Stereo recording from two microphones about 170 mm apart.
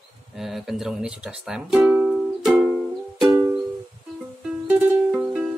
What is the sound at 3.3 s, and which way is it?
Music, 15° right (ahead or behind).